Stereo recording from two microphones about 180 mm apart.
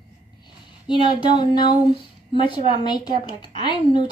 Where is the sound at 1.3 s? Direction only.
25° left (ahead or behind).